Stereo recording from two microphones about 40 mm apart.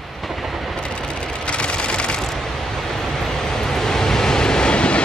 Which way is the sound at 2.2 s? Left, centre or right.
Centre.